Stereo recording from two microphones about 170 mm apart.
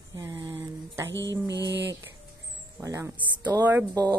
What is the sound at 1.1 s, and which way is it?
Mantra, 90° right.